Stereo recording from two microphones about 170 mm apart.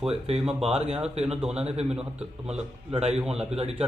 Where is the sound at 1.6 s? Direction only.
40° right (ahead or behind).